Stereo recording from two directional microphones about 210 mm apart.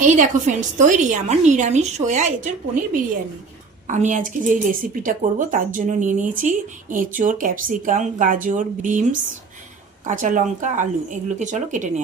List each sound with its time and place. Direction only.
0.0 s a woman's voice: 35° right (ahead or behind)
3.8 s a woman's voice: 35° right (ahead or behind)
10.1 s a woman's voice: 40° right (ahead or behind)